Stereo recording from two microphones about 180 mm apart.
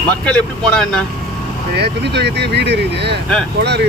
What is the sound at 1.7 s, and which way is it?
Speech, 65° right (ahead or behind).